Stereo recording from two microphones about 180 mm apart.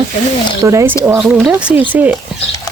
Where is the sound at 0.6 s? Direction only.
15° right (ahead or behind).